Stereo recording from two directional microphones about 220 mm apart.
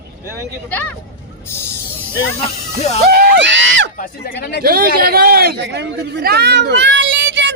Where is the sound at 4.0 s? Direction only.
45° left (ahead or behind).